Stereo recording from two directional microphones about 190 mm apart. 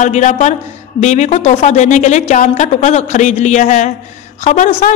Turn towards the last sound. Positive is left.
turn(degrees=35)  # may be behind; listen again after turning